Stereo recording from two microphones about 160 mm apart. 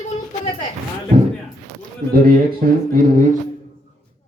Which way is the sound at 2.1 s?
65° right (ahead or behind).